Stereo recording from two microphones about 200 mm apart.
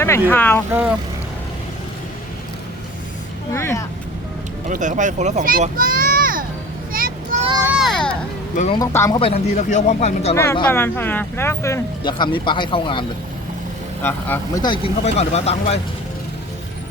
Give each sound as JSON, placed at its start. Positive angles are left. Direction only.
{"t": 0.0, "sound": "speech", "side_deg": 10}
{"t": 0.7, "sound": "speech", "side_deg": -10}
{"t": 3.5, "sound": "speech", "side_deg": 15}
{"t": 4.7, "sound": "a child's voice", "side_deg": -40}
{"t": 6.9, "sound": "vehicle", "side_deg": -45}
{"t": 7.7, "sound": "a sound", "side_deg": 0}
{"t": 8.7, "sound": "speech", "side_deg": 15}
{"t": 9.1, "sound": "speech", "side_deg": 30}
{"t": 10.3, "sound": "speech", "side_deg": 15}
{"t": 14.0, "sound": "speech", "side_deg": 10}
{"t": 14.6, "sound": "speech", "side_deg": 30}